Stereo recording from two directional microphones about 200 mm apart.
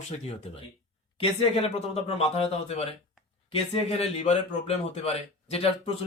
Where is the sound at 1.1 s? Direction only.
30° left (ahead or behind).